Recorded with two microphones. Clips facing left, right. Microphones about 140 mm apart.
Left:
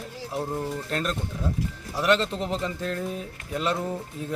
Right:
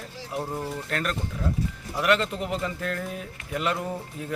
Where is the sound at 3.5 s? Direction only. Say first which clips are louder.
Left 1 dB; 30° left (ahead or behind).